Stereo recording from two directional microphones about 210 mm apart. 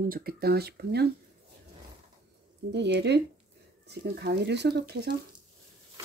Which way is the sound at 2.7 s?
55° right (ahead or behind).